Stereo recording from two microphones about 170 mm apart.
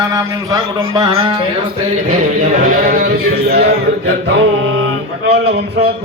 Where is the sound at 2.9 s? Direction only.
65° right (ahead or behind).